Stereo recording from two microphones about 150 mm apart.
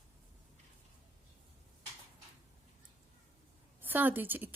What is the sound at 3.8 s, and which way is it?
Speech, 10° right (ahead or behind).